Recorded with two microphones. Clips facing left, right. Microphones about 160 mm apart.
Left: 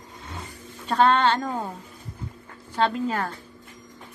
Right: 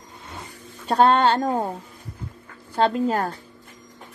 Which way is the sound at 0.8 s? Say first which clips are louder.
Right 3 dB; 45° right (ahead or behind).